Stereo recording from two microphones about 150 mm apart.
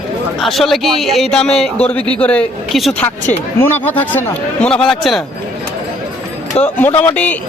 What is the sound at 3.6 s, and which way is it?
Speech, 15° left (ahead or behind).